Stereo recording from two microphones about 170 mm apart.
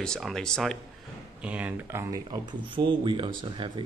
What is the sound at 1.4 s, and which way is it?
Speech, 10° right (ahead or behind).